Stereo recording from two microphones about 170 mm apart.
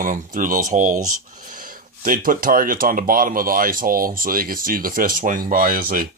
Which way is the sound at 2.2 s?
55° right (ahead or behind).